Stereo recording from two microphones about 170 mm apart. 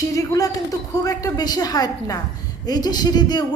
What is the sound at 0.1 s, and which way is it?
A woman's voice, 20° left (ahead or behind).